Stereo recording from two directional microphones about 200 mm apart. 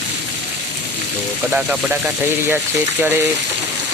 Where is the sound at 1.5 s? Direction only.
5° right (ahead or behind).